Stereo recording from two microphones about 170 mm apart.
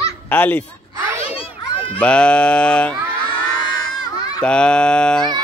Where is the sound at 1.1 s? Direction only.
35° left (ahead or behind).